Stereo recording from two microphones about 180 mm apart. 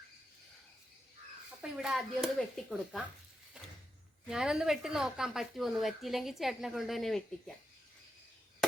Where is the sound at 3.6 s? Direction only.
5° right (ahead or behind).